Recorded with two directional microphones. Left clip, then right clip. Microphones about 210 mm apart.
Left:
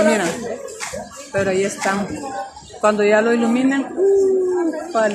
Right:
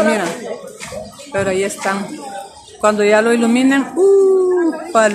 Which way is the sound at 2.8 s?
5° right (ahead or behind).